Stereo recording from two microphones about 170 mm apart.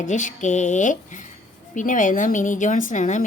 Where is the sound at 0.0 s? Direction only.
45° left (ahead or behind).